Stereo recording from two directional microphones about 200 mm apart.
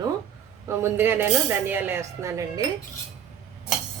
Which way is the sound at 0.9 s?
10° right (ahead or behind).